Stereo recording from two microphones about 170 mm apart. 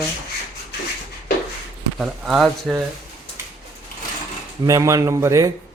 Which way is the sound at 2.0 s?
Centre (ahead or behind).